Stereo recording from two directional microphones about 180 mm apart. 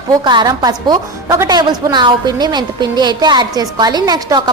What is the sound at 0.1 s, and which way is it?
A woman's voice, 25° right (ahead or behind).